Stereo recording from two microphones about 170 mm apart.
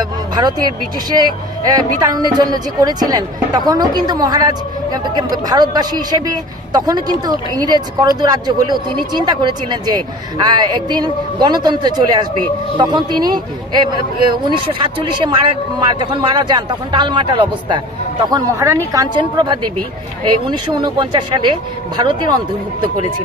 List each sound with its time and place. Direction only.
0.0 s speech: 25° right (ahead or behind)
16.0 s speech: 25° right (ahead or behind)